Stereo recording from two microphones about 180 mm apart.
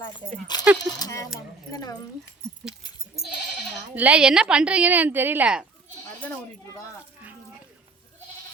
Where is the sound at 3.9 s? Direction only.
5° right (ahead or behind).